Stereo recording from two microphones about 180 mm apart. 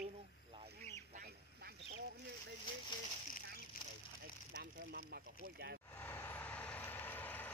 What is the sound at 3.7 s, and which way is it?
Vehicle, 50° left (ahead or behind).